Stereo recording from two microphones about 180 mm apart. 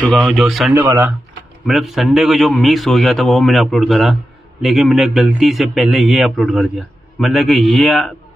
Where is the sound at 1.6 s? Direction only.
Centre (ahead or behind).